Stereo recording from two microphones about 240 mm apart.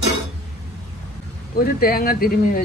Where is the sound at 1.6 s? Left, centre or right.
Left.